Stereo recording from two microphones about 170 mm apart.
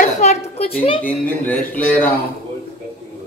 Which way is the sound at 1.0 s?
10° left (ahead or behind).